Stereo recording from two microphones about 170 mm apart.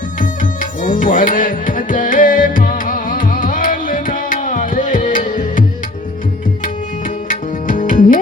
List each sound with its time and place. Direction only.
0.2 s music: 50° left (ahead or behind)
7.3 s tabla: 50° left (ahead or behind)